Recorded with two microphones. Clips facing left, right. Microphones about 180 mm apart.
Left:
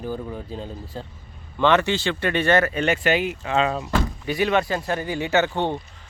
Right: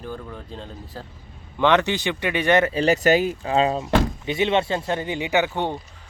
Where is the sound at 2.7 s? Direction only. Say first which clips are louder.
Right 3 dB; 35° right (ahead or behind); by 5.5 s 15° right (ahead or behind).